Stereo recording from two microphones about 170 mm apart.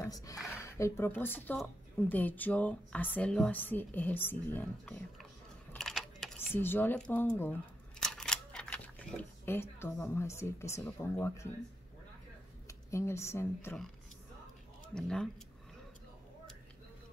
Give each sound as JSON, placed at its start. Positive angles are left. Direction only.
{"t": 0.0, "sound": "speech", "side_deg": 20}
{"t": 5.7, "sound": "a sound", "side_deg": 0}
{"t": 6.6, "sound": "speech", "side_deg": 10}
{"t": 12.6, "sound": "speech", "side_deg": 15}
{"t": 15.0, "sound": "speech", "side_deg": 5}